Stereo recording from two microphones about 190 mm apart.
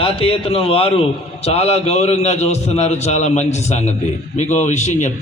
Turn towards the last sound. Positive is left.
turn(degrees=40)  # may be behind; listen again after turning